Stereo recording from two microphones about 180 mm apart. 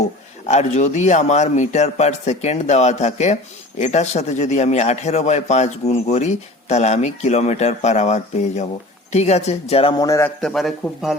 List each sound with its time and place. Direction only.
0.4 s a man's voice: 40° left (ahead or behind)
10.0 s a man's voice: 15° left (ahead or behind)
10.4 s a man's voice: centre (ahead or behind)